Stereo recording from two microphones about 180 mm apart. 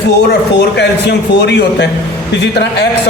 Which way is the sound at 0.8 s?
70° left (ahead or behind).